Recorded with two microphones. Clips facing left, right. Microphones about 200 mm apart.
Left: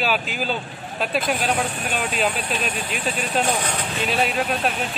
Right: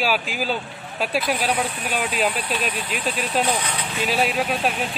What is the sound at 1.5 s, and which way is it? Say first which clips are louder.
Speech: even; 50° left (ahead or behind).